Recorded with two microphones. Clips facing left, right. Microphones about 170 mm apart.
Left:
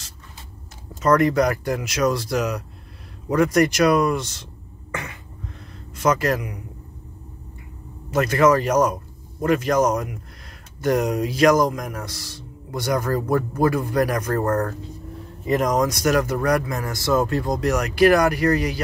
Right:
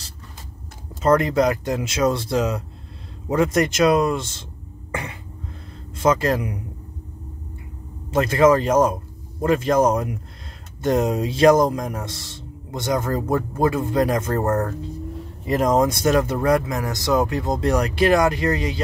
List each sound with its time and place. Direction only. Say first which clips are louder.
1.0 s speech: even; 25° right (ahead or behind)
5.9 s speech: right 1 dB; 25° right (ahead or behind)
8.1 s speech: right 1 dB; 25° right (ahead or behind)